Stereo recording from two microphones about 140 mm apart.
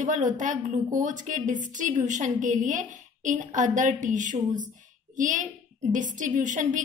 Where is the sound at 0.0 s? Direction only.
65° right (ahead or behind).